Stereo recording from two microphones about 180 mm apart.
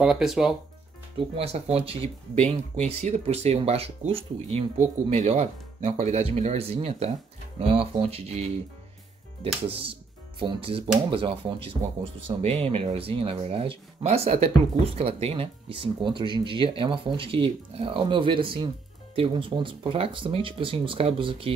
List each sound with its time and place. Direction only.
0.0 s speech: 5° right (ahead or behind)
1.1 s speech: 35° right (ahead or behind)
9.7 s speech: 30° right (ahead or behind)